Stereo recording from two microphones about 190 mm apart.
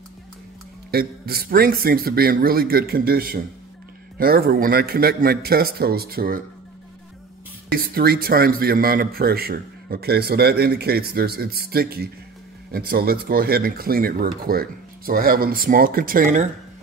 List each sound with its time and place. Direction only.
0.9 s a man's voice: 55° right (ahead or behind)
7.7 s a man's voice: 55° right (ahead or behind)